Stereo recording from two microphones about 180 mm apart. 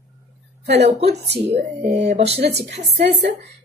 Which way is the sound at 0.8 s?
35° right (ahead or behind).